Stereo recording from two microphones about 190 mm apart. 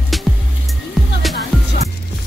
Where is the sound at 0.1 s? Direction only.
Centre (ahead or behind).